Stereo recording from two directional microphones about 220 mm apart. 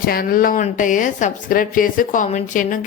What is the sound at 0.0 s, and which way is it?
Speech, 40° left (ahead or behind).